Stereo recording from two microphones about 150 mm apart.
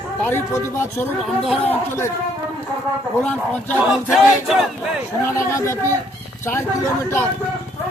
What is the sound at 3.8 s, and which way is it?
Choir, 5° right (ahead or behind).